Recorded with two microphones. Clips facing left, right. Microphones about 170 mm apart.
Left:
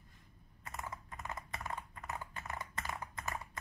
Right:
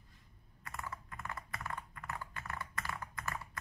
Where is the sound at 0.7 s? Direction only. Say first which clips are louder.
Even; 20° left (ahead or behind).